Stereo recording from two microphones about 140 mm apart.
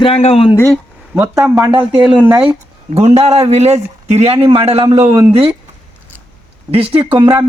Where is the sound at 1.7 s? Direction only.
35° right (ahead or behind).